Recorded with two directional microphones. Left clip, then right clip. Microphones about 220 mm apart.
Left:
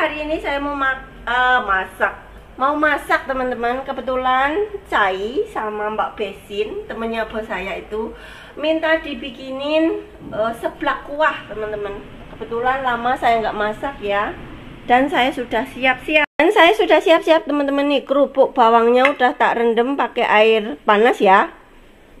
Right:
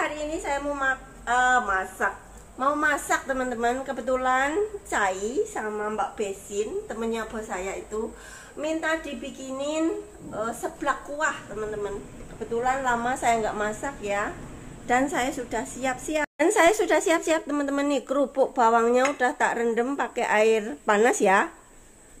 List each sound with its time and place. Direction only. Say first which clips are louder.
0.0 s a woman's voice: left 8 dB; 15° left (ahead or behind)
10.4 s a woman's voice: left 8 dB; 5° left (ahead or behind)
12.6 s a woman's voice: left 7 dB; 10° left (ahead or behind)
15.8 s a woman's voice: left 12 dB; 10° left (ahead or behind)